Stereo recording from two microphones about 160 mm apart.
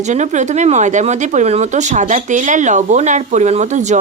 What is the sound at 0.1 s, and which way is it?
Speech, 50° right (ahead or behind).